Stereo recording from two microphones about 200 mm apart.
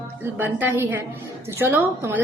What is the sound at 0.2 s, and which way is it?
A woman's voice, 10° right (ahead or behind).